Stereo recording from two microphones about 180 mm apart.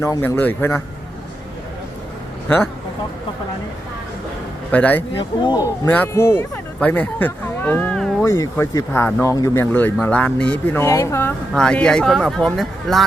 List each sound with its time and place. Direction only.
0.0 s speech: 15° left (ahead or behind)
4.7 s speech: 10° left (ahead or behind)
5.4 s speech: 25° left (ahead or behind)
5.9 s speech: 10° left (ahead or behind)